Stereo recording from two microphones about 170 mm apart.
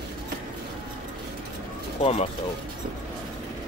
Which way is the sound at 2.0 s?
35° left (ahead or behind).